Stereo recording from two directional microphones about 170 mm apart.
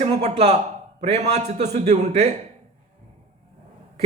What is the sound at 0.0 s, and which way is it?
A man's voice, 45° right (ahead or behind).